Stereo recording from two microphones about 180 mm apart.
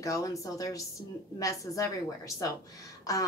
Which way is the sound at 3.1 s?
20° left (ahead or behind).